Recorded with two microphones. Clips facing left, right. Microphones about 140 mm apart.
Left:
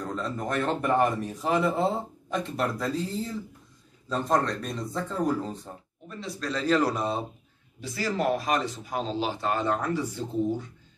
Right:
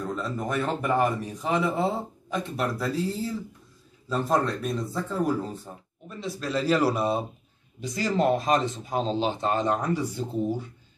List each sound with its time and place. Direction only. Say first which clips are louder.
0.0 s speech: right 1 dB; 5° right (ahead or behind)
4.1 s a man's voice: right 1 dB; 5° right (ahead or behind)